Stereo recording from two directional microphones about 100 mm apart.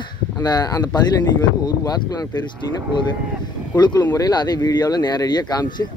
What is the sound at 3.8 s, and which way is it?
Speech, 40° left (ahead or behind).